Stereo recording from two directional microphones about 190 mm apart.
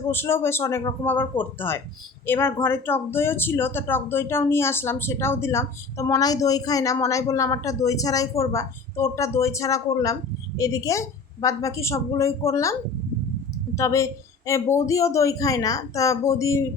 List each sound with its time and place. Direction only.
0.1 s speech: 10° left (ahead or behind)
13.7 s speech: 15° left (ahead or behind)